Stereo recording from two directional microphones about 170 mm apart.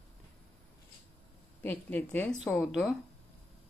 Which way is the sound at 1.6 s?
10° left (ahead or behind).